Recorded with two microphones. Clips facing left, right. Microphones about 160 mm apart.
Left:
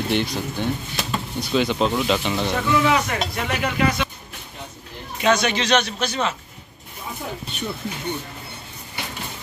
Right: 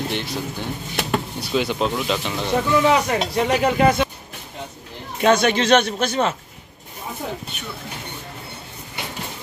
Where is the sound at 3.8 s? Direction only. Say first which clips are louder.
Right 3 dB; 50° right (ahead or behind).